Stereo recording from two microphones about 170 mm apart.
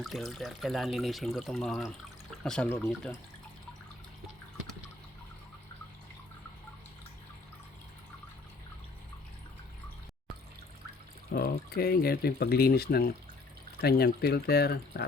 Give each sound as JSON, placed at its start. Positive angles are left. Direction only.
{"t": 0.0, "sound": "speech", "side_deg": 0}
{"t": 11.3, "sound": "speech", "side_deg": 65}